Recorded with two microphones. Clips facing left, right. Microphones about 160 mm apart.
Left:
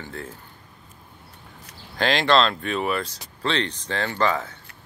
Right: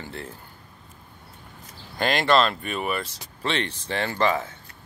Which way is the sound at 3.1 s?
20° right (ahead or behind).